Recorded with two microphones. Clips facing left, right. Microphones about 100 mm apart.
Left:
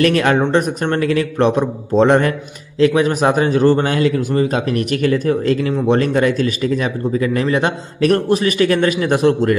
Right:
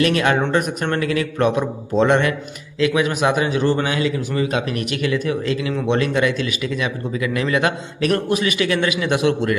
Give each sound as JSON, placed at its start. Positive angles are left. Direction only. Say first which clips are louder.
{"t": 0.0, "sound": "a man's voice", "louder": "left 3 dB", "side_deg": 40}